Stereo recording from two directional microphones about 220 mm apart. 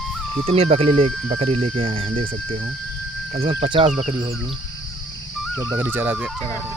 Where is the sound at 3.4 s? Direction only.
25° right (ahead or behind).